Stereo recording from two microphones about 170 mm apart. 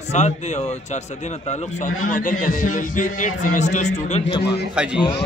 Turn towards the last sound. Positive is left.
turn(degrees=-5)  # may be behind; listen again after turning